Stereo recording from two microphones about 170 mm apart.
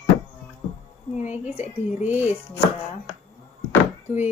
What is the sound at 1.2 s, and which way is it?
Speech, 10° right (ahead or behind).